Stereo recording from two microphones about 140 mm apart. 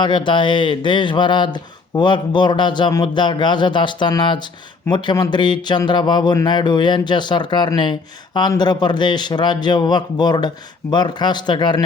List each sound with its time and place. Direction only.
0.0 s speech: 35° left (ahead or behind)